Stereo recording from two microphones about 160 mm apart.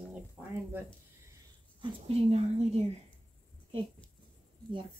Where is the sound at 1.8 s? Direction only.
40° right (ahead or behind).